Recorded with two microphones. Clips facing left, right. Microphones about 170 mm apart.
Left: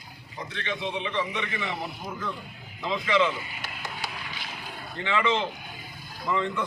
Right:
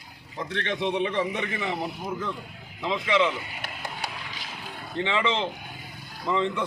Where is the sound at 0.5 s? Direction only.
60° right (ahead or behind); by 1.7 s 35° right (ahead or behind).